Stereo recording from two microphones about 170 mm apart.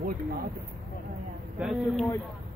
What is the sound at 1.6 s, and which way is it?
Speech, centre (ahead or behind).